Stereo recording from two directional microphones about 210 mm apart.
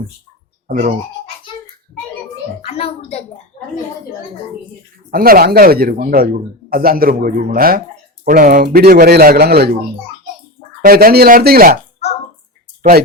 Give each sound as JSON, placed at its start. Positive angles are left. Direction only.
{"t": 0.7, "sound": "speech", "side_deg": -40}
{"t": 2.6, "sound": "a woman's voice", "side_deg": 30}
{"t": 5.1, "sound": "speech", "side_deg": -45}
{"t": 10.8, "sound": "speech", "side_deg": -45}
{"t": 12.8, "sound": "speech", "side_deg": -45}